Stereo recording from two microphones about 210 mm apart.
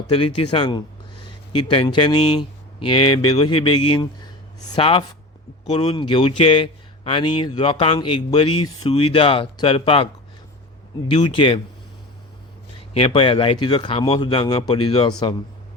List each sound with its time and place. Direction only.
0.1 s a man's voice: 25° left (ahead or behind)
0.5 s a sound: 20° left (ahead or behind)
1.6 s a man's voice: 20° left (ahead or behind)
8.4 s speech: 90° left
8.8 s a man's voice: 25° left (ahead or behind)
11.1 s a man's voice: 25° left (ahead or behind)
12.9 s a man's voice: 25° left (ahead or behind)